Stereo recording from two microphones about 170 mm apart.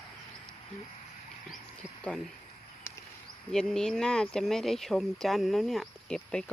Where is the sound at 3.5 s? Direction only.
5° left (ahead or behind).